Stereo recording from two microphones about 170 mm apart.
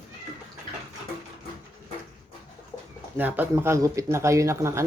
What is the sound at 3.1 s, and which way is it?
Speech, 10° right (ahead or behind).